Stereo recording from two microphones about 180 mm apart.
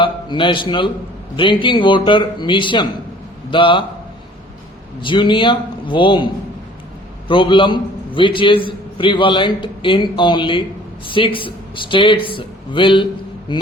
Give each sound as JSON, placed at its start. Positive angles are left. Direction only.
{"t": 0.0, "sound": "a man's voice", "side_deg": 30}
{"t": 4.9, "sound": "a man's voice", "side_deg": 25}